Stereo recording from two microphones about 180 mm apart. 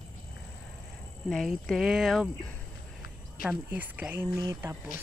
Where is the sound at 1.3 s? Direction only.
Centre (ahead or behind).